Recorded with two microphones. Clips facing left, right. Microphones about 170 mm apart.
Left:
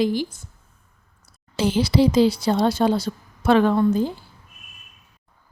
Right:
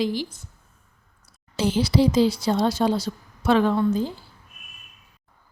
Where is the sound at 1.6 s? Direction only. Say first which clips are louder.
Left 2 dB; 60° left (ahead or behind).